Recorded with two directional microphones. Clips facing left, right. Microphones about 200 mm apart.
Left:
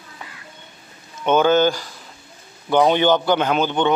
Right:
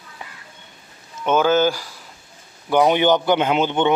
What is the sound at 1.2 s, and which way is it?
Speech, 5° right (ahead or behind).